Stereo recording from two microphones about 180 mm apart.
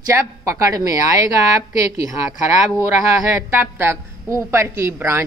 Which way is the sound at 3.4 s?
10° right (ahead or behind).